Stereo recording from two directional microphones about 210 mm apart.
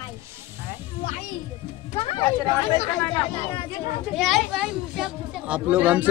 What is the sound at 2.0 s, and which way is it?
Speech, 25° left (ahead or behind).